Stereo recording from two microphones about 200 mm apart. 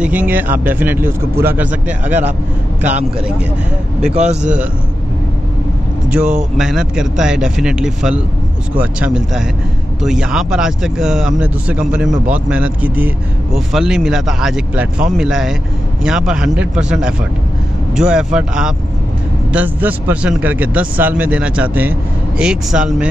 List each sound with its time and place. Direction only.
0.0 s a man's voice: 10° right (ahead or behind)
2.8 s speech: 35° right (ahead or behind)
4.1 s speech: 35° right (ahead or behind)
6.1 s a man's voice: 5° right (ahead or behind)